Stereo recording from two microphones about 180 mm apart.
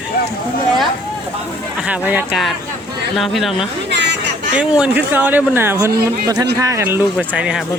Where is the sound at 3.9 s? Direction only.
75° right (ahead or behind).